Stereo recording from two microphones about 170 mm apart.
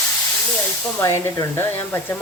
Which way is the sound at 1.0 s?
15° left (ahead or behind).